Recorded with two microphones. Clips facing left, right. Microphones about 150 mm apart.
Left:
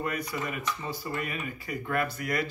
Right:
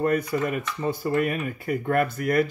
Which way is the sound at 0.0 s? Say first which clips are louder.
Right 9 dB; 50° right (ahead or behind).